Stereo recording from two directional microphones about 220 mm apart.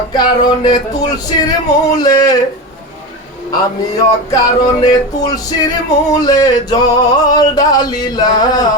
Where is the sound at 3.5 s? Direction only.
15° left (ahead or behind).